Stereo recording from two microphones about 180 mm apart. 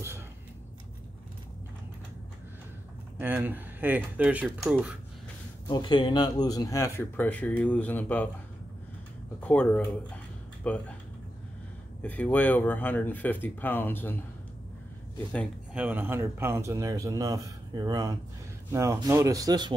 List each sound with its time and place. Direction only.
3.2 s speech: 10° right (ahead or behind)
5.7 s speech: 25° left (ahead or behind); by 8.3 s 10° left (ahead or behind)
9.4 s speech: 5° left (ahead or behind)
12.0 s speech: 10° left (ahead or behind)
15.7 s speech: 10° right (ahead or behind)